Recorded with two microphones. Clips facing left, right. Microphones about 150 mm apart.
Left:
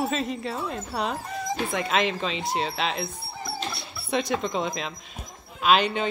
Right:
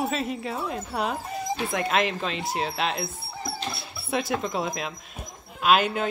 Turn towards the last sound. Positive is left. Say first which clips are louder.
# even
turn(degrees=-5)  # may be behind; listen again after turning